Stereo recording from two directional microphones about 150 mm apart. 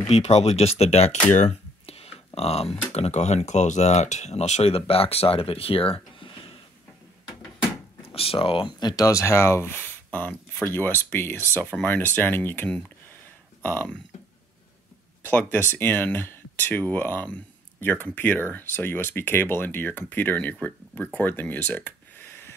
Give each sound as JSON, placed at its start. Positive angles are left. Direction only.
{"t": 0.0, "sound": "speech", "side_deg": 45}
{"t": 6.1, "sound": "a sound", "side_deg": 35}
{"t": 8.1, "sound": "speech", "side_deg": 40}
{"t": 15.2, "sound": "speech", "side_deg": 10}